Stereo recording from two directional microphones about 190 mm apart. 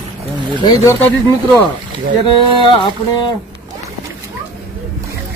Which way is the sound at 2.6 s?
25° left (ahead or behind).